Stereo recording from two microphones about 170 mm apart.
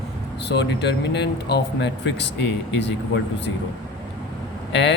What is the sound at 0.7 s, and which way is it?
Speech, 80° left.